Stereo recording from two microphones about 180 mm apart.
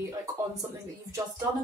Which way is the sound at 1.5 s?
25° right (ahead or behind).